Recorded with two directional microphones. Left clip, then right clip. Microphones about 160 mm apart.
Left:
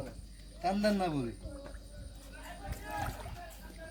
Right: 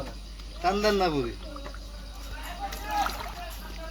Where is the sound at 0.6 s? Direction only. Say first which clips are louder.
Right 7 dB; 75° left (ahead or behind).